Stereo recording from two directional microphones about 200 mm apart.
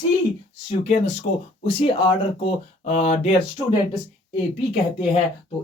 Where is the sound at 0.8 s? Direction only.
35° left (ahead or behind).